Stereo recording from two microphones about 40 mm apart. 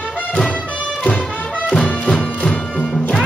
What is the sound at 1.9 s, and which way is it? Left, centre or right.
Music, left.